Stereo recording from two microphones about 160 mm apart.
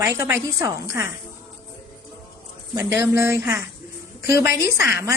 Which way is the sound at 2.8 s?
15° right (ahead or behind).